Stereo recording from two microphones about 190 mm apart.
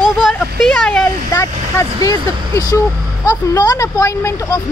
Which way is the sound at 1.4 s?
15° left (ahead or behind).